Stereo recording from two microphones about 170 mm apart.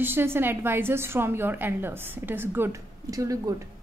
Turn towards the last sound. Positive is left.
turn(degrees=-20)  # may be behind; listen again after turning